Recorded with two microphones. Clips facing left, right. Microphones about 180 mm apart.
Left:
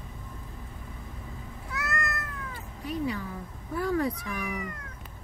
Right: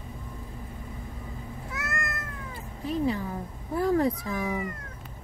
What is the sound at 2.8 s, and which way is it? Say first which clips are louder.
A woman's voice: right 4 dB; 30° right (ahead or behind).